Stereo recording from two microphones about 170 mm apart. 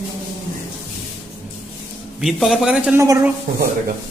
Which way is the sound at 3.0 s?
15° right (ahead or behind).